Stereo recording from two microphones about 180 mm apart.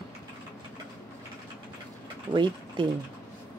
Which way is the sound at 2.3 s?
25° right (ahead or behind).